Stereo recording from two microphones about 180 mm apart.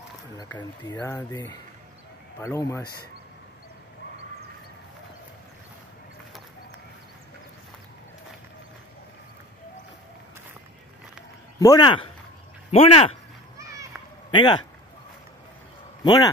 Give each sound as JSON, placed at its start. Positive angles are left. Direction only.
{"t": 0.4, "sound": "speech", "side_deg": 20}
{"t": 11.6, "sound": "speech", "side_deg": 25}
{"t": 14.3, "sound": "speech", "side_deg": 25}
{"t": 16.0, "sound": "speech", "side_deg": 25}